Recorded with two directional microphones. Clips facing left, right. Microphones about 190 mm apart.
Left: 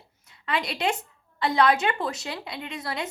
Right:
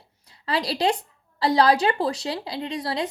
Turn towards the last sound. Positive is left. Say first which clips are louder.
# right 5 dB
turn(degrees=-30)  # may be behind; listen again after turning